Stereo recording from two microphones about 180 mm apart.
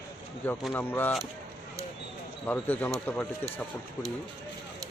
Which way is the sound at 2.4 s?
10° left (ahead or behind).